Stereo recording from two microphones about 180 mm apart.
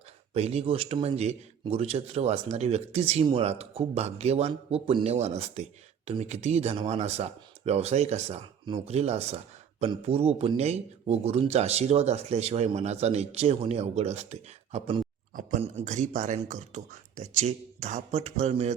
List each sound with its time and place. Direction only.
0.3 s speech: 35° right (ahead or behind)